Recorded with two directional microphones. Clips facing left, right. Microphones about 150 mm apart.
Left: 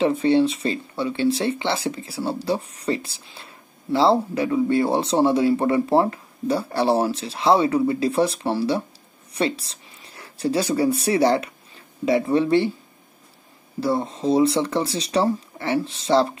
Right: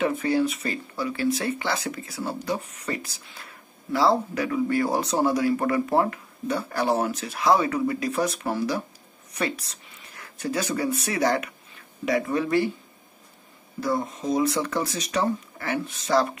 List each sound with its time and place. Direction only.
0.0 s speech: 30° left (ahead or behind)
13.7 s speech: 30° left (ahead or behind)